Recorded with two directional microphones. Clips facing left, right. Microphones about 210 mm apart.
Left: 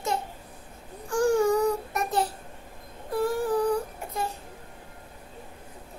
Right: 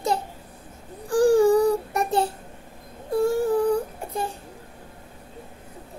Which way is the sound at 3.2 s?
25° right (ahead or behind).